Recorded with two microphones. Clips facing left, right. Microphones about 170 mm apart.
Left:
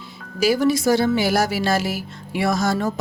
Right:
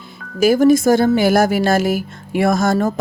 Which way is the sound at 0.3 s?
50° right (ahead or behind).